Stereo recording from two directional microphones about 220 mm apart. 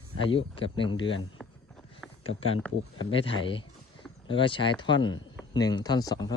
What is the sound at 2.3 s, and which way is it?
Speech, 65° left (ahead or behind).